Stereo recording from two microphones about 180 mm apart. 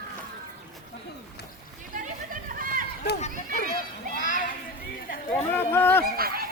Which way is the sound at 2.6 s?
50° right (ahead or behind).